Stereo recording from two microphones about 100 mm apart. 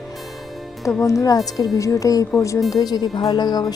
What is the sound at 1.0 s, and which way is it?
Speech, 30° left (ahead or behind).